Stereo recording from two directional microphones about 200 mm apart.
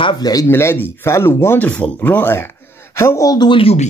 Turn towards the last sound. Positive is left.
turn(degrees=30)  # may be behind; listen again after turning